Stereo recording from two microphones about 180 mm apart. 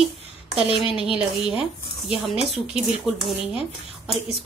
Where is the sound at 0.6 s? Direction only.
30° left (ahead or behind).